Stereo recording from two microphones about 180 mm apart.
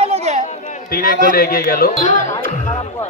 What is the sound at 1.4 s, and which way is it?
Speech, 55° left (ahead or behind).